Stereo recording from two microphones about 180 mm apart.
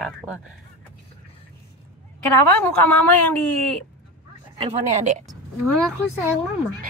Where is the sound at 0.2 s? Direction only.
15° right (ahead or behind).